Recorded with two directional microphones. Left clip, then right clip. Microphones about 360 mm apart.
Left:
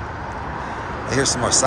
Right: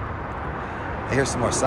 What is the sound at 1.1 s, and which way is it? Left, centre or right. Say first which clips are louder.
Speech: left 4 dB; centre.